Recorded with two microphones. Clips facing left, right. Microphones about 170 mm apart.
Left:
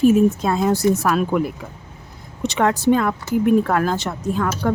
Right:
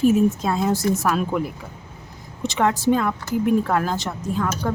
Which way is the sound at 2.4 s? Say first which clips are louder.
Left 2 dB; 60° left (ahead or behind).